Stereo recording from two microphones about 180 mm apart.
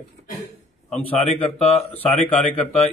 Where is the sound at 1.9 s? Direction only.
5° left (ahead or behind).